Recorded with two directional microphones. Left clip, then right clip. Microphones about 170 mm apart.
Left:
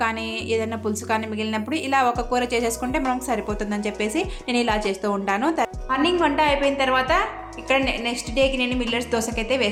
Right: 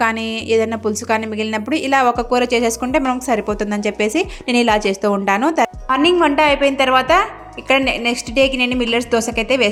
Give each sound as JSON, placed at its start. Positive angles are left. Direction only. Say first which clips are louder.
{"t": 0.0, "sound": "a woman's voice", "louder": "right 6 dB", "side_deg": -40}